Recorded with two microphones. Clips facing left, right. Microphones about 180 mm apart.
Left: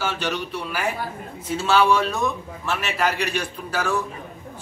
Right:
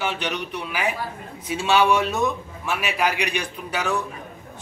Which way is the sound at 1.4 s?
15° right (ahead or behind).